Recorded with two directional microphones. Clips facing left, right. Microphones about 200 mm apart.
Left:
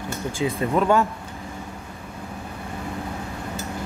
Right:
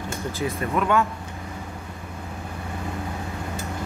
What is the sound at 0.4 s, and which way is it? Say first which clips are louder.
Speech: left 4 dB; 15° left (ahead or behind).